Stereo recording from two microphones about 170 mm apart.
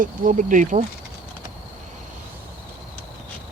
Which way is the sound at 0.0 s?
50° right (ahead or behind).